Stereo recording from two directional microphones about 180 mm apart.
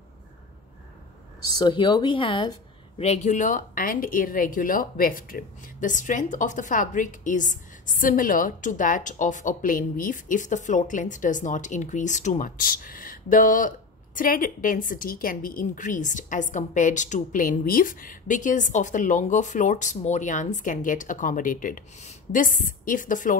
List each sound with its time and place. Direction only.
1.5 s speech: 25° left (ahead or behind)
3.0 s speech: 40° left (ahead or behind)